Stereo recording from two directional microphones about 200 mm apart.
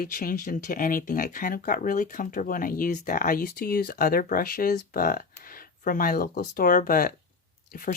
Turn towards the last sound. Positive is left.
turn(degrees=45)  # may be behind; listen again after turning